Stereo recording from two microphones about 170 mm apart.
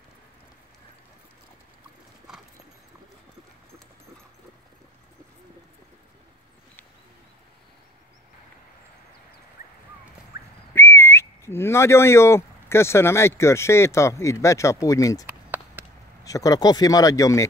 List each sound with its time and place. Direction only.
10.7 s whistling: 15° left (ahead or behind)
15.2 s a sound: 10° right (ahead or behind)
16.3 s speech: 20° left (ahead or behind)